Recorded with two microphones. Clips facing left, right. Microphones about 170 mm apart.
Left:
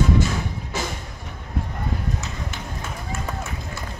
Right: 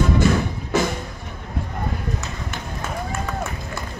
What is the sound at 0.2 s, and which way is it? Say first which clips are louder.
Music: right 8 dB; 60° right (ahead or behind).